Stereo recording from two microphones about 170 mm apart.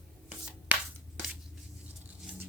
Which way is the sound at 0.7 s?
10° right (ahead or behind).